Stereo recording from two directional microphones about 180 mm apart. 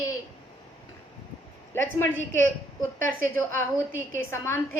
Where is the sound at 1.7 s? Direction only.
15° left (ahead or behind).